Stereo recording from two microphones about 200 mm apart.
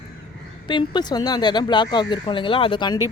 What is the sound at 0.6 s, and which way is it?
Speech, 20° left (ahead or behind).